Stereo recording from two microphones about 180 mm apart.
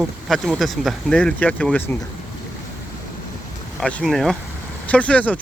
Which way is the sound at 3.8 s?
5° left (ahead or behind).